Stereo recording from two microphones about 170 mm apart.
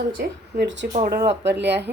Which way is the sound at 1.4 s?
90° right.